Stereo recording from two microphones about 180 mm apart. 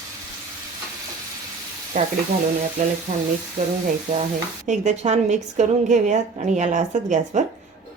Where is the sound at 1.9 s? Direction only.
50° right (ahead or behind).